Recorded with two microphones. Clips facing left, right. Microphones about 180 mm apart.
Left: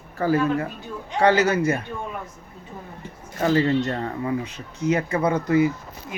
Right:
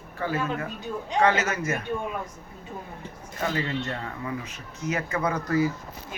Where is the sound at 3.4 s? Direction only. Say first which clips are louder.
Left 9 dB; 35° left (ahead or behind).